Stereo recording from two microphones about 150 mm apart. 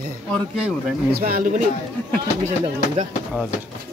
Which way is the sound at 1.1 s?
80° right.